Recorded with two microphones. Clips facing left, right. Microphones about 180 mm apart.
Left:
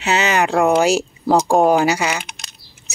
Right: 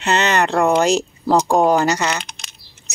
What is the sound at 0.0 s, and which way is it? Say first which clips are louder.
Speech: even; 5° left (ahead or behind).